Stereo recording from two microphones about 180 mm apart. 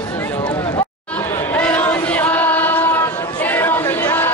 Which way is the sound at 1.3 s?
10° left (ahead or behind).